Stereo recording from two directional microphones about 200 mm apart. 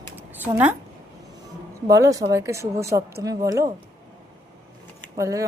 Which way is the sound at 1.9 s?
15° right (ahead or behind).